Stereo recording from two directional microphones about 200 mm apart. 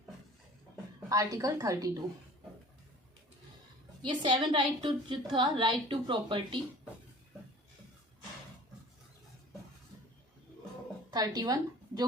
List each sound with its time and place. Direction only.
1.1 s a woman's voice: 15° right (ahead or behind)
4.0 s a woman's voice: 25° right (ahead or behind)
11.1 s a woman's voice: 20° right (ahead or behind)